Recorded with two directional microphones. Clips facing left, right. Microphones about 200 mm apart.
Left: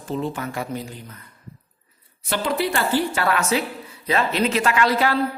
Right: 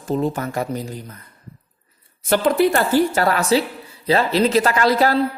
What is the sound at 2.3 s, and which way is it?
A woman's voice, 50° right (ahead or behind).